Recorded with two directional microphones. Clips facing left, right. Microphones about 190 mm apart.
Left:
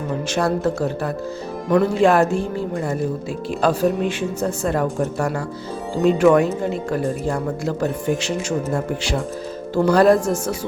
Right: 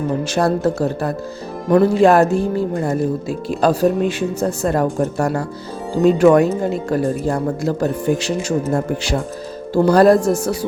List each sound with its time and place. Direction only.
0.3 s speech: 35° right (ahead or behind)
9.7 s speech: 35° right (ahead or behind)